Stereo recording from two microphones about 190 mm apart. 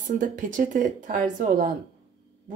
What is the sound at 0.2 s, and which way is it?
Speech, 45° right (ahead or behind).